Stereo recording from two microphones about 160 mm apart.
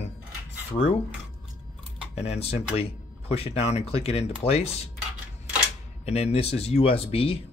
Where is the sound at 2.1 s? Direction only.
40° left (ahead or behind).